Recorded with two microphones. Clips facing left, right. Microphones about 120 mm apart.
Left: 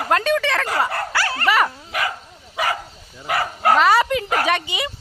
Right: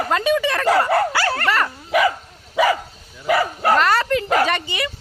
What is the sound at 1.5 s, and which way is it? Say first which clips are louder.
Dog: left 6 dB; 10° left (ahead or behind).